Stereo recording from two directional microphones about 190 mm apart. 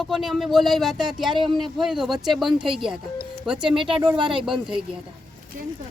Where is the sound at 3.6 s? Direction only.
25° right (ahead or behind).